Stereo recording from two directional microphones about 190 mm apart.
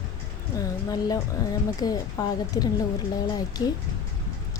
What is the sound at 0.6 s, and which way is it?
A woman's voice, 20° left (ahead or behind).